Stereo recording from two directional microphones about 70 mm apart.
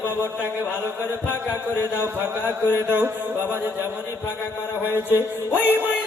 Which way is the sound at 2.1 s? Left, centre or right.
Right.